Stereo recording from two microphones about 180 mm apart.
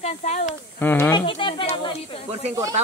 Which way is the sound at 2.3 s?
35° right (ahead or behind).